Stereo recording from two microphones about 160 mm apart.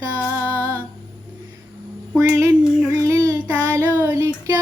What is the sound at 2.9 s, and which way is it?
Child singing, 20° right (ahead or behind).